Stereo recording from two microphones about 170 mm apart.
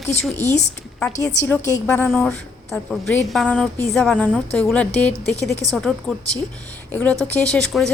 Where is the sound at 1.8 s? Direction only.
10° left (ahead or behind).